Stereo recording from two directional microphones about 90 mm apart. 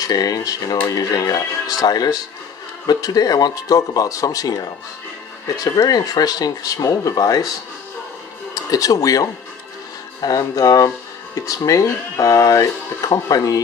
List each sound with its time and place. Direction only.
0.0 s speech: 45° left (ahead or behind)
5.6 s speech: 45° left (ahead or behind)
8.5 s speech: 40° left (ahead or behind)